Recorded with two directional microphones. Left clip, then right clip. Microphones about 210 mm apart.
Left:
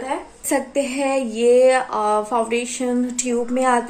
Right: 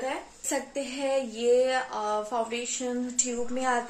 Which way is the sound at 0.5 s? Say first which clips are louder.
Left 11 dB; 40° left (ahead or behind).